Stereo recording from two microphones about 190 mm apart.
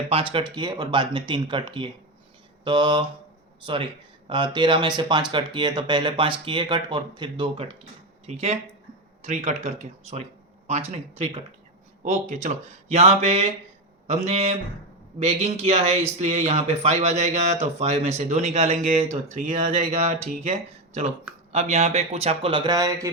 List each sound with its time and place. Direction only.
0.1 s speech: 30° right (ahead or behind)
4.3 s speech: 25° right (ahead or behind)
9.2 s speech: 35° right (ahead or behind); by 23.1 s 15° right (ahead or behind)